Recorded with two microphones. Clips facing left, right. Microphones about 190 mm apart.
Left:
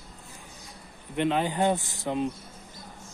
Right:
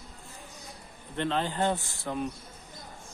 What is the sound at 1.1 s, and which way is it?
Speech, 15° left (ahead or behind).